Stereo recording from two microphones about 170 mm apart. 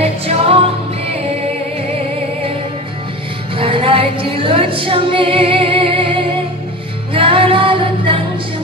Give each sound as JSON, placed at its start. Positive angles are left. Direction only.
{"t": 0.0, "sound": "music", "side_deg": -35}
{"t": 3.5, "sound": "music", "side_deg": -30}
{"t": 7.2, "sound": "female singing", "side_deg": -30}